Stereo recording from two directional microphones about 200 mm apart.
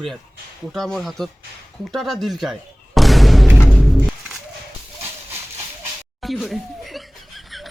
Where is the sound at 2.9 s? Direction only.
Centre (ahead or behind).